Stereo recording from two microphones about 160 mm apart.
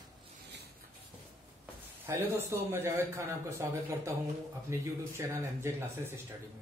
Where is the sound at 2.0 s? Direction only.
15° right (ahead or behind).